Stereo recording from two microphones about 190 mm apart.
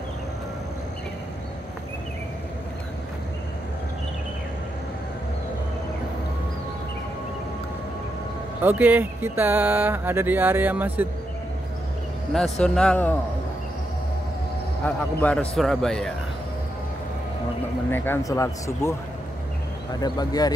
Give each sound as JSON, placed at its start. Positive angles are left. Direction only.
{"t": 8.6, "sound": "speech", "side_deg": -10}
{"t": 12.3, "sound": "a man's voice", "side_deg": 0}
{"t": 14.9, "sound": "a man's voice", "side_deg": 5}
{"t": 17.9, "sound": "speech", "side_deg": 10}